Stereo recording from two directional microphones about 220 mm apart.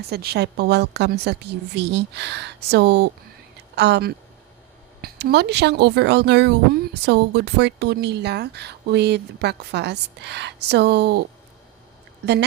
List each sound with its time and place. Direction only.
0.1 s a woman's voice: 45° right (ahead or behind)